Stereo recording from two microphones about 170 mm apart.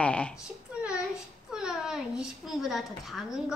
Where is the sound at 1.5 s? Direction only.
5° right (ahead or behind).